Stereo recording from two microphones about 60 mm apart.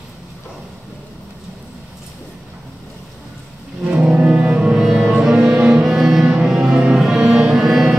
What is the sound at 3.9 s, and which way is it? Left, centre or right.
Music, centre.